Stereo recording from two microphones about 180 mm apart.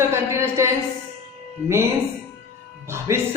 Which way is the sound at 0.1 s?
15° right (ahead or behind).